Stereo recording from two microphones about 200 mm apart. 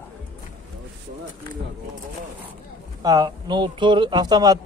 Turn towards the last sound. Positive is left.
turn(degrees=-20)  # may be behind; listen again after turning